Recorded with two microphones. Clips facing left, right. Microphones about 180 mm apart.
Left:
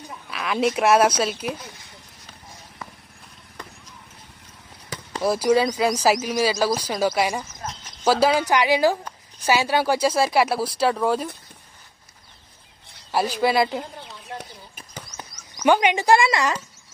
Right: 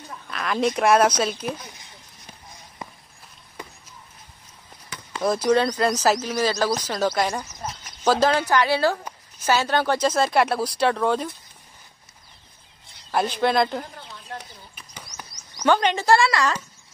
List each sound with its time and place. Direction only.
0.1 s speech: 5° left (ahead or behind)
5.2 s speech: 5° left (ahead or behind)
13.1 s speech: 5° left (ahead or behind)
15.6 s speech: 15° left (ahead or behind)